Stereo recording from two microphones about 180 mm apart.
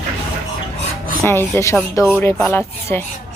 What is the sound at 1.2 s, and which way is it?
A woman's voice, 15° left (ahead or behind).